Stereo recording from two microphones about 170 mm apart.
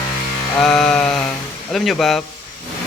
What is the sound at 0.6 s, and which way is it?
Music, 5° left (ahead or behind).